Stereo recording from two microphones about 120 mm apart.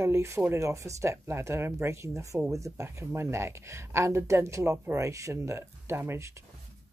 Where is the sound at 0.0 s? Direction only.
25° right (ahead or behind).